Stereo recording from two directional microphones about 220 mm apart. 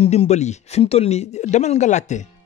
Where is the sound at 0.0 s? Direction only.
25° left (ahead or behind).